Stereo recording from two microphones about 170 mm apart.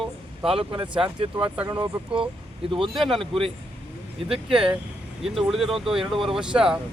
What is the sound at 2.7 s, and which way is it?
Speech, 30° right (ahead or behind).